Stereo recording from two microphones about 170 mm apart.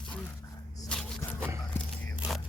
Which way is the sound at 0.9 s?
5° left (ahead or behind).